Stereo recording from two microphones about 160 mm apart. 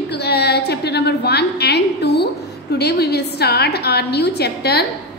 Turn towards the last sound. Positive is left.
turn(degrees=90)